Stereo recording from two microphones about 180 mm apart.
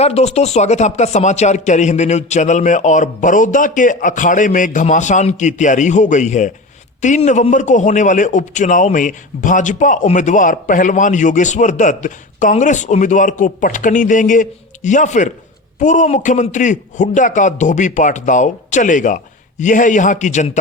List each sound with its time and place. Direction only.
0.0 s a man's voice: 35° left (ahead or behind)